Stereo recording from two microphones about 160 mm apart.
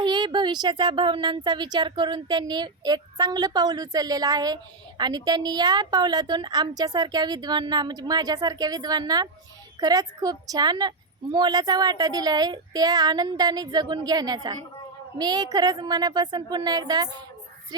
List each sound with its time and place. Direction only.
0.0 s speech: 30° right (ahead or behind)